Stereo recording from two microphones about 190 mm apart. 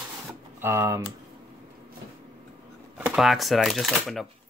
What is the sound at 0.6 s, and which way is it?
Speech, 15° right (ahead or behind).